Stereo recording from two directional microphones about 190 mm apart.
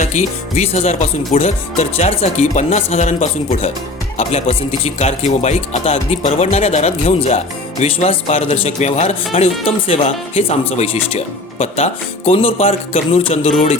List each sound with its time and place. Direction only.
0.0 s speech: 40° left (ahead or behind)